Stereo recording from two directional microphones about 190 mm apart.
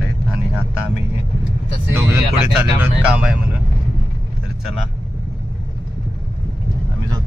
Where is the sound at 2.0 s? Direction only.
10° right (ahead or behind).